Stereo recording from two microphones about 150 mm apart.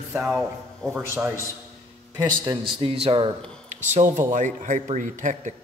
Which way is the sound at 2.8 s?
40° right (ahead or behind).